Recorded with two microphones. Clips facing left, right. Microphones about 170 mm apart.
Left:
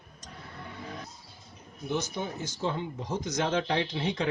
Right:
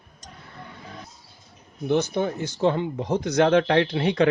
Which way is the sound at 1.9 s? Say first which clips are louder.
Right 9 dB; 65° right (ahead or behind).